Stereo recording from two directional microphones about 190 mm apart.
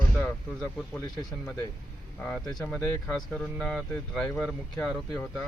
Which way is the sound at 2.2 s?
Centre (ahead or behind).